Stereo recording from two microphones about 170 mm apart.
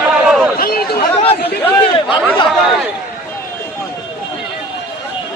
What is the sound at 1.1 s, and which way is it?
Chatter, 35° left (ahead or behind).